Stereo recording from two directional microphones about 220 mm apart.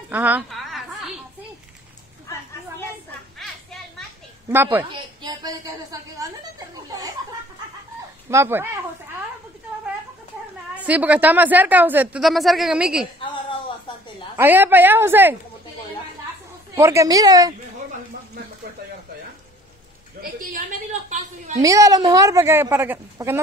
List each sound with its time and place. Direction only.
0.1 s a sound: 10° right (ahead or behind)
4.5 s speech: 10° right (ahead or behind)
4.8 s a sound: 20° right (ahead or behind)
8.3 s speech: 10° right (ahead or behind)
10.9 s speech: 5° right (ahead or behind)
14.3 s speech: 10° right (ahead or behind)
16.7 s speech: 15° right (ahead or behind)
20.2 s a woman's voice: 40° right (ahead or behind)
21.5 s speech: 15° right (ahead or behind)